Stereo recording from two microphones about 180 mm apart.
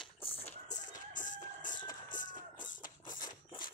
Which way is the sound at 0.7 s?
45° left (ahead or behind).